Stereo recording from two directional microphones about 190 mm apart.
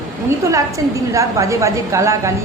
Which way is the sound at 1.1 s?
15° right (ahead or behind).